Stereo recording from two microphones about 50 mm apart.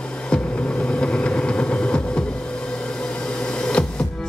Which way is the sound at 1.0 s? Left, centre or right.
Centre.